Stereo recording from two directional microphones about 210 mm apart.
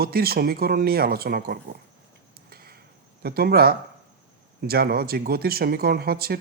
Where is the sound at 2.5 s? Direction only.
45° right (ahead or behind).